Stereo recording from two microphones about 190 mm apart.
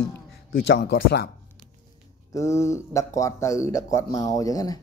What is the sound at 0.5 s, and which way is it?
Speech, 55° left (ahead or behind).